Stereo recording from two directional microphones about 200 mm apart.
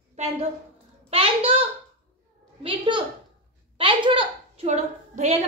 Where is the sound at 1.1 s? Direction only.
30° right (ahead or behind).